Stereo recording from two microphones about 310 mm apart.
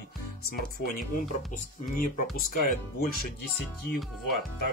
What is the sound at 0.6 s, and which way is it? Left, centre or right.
Speech, left.